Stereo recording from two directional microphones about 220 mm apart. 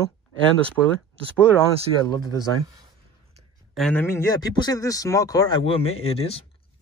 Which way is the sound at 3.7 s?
5° left (ahead or behind).